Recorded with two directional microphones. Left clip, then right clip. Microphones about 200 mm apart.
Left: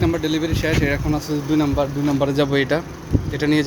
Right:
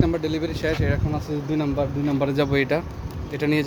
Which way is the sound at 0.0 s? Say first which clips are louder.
Left 3 dB; 5° right (ahead or behind).